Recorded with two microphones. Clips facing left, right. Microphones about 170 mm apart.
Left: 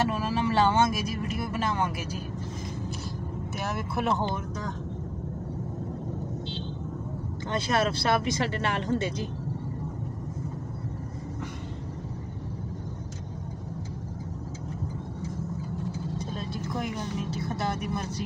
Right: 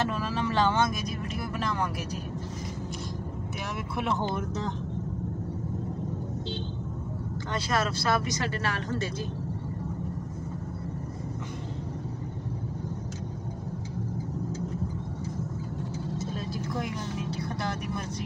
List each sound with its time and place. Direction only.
0.1 s vehicle: 5° left (ahead or behind)
3.5 s speech: centre (ahead or behind)
7.5 s speech: 25° left (ahead or behind)